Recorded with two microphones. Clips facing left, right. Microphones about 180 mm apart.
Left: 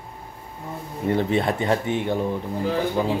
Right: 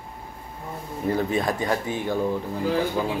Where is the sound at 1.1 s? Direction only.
25° left (ahead or behind).